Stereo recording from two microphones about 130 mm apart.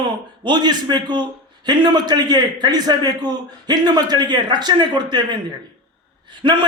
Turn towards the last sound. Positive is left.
turn(degrees=-35)  # may be behind; listen again after turning